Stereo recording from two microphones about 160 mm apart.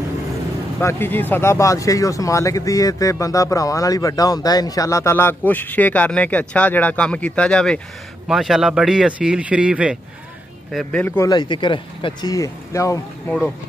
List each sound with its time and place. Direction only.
0.7 s speech: 15° left (ahead or behind); by 9.9 s 5° right (ahead or behind)
10.7 s speech: 5° left (ahead or behind)
11.3 s speech: 30° left (ahead or behind)